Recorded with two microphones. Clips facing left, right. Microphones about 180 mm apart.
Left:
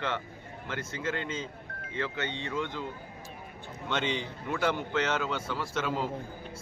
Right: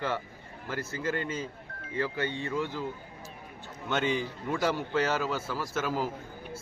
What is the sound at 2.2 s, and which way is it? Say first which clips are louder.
Speech: right 3 dB; 80° left.